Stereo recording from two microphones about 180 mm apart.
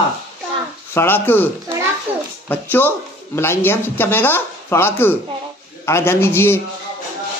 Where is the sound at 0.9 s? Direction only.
10° left (ahead or behind).